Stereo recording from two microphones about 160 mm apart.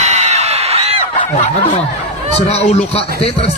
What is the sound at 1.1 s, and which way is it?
Snicker, 30° left (ahead or behind).